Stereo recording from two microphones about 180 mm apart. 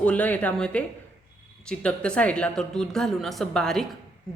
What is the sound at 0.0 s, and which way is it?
A woman's voice, 5° left (ahead or behind).